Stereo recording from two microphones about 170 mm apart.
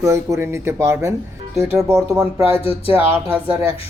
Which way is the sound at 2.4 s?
35° left (ahead or behind).